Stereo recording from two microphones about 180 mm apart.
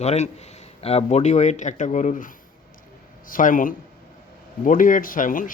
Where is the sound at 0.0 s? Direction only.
35° left (ahead or behind).